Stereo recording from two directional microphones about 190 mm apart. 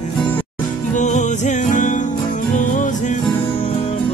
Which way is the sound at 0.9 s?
40° left (ahead or behind).